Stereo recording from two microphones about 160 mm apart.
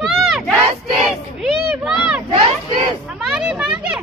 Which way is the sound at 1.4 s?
Centre (ahead or behind).